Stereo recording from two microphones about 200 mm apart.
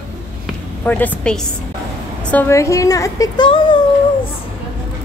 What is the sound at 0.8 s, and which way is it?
A woman's voice, 10° left (ahead or behind).